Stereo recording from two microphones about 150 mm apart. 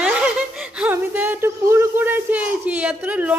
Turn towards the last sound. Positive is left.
turn(degrees=-10)  # may be behind; listen again after turning